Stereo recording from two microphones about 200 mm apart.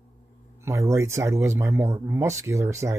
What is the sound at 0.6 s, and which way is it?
Speech, 15° right (ahead or behind).